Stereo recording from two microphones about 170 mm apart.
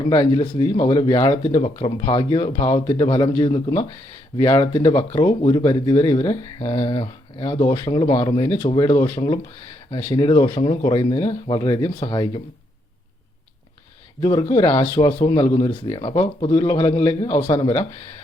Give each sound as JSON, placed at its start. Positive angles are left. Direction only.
{"t": 0.0, "sound": "a man's voice", "side_deg": 35}
{"t": 1.5, "sound": "a man's voice", "side_deg": 35}
{"t": 4.7, "sound": "a man's voice", "side_deg": 30}
{"t": 8.7, "sound": "speech", "side_deg": 40}
{"t": 9.0, "sound": "speech", "side_deg": 10}
{"t": 9.9, "sound": "a man's voice", "side_deg": 25}
{"t": 14.2, "sound": "a man's voice", "side_deg": 20}